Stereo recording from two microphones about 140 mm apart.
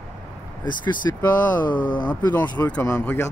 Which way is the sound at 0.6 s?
30° left (ahead or behind).